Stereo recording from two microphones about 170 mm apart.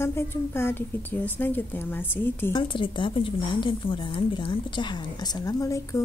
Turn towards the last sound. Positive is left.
turn(degrees=20)  # may be behind; listen again after turning